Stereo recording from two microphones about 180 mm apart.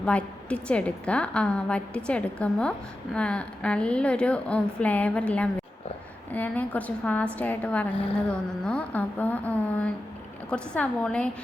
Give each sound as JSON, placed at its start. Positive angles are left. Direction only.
{"t": 0.0, "sound": "a woman's voice", "side_deg": 5}